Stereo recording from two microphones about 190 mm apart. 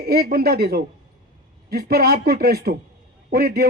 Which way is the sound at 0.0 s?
55° right (ahead or behind).